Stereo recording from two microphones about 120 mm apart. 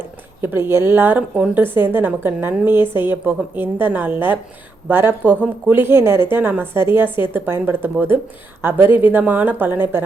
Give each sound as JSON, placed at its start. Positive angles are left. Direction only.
{"t": 0.4, "sound": "a woman's voice", "side_deg": -20}